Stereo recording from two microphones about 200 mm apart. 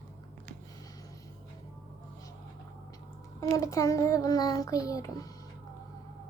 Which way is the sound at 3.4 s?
15° left (ahead or behind).